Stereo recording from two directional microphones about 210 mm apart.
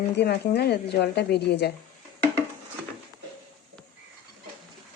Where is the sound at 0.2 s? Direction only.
50° left (ahead or behind).